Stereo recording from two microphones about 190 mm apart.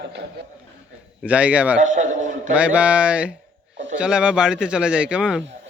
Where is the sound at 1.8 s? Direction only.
40° right (ahead or behind).